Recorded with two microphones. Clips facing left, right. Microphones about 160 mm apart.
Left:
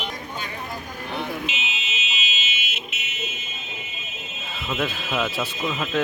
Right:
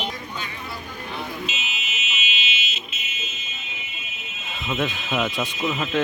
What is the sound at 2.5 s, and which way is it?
Fire alarm, 55° left (ahead or behind).